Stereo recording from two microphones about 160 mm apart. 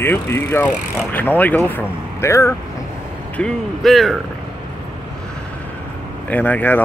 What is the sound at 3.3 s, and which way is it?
Speech, 5° left (ahead or behind).